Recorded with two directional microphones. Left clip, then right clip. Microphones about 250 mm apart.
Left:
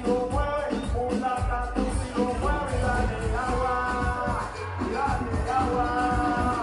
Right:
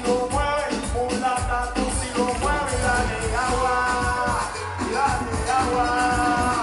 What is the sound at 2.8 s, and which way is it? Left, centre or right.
Music, centre.